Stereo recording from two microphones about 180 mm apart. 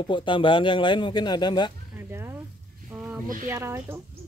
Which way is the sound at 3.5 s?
15° right (ahead or behind).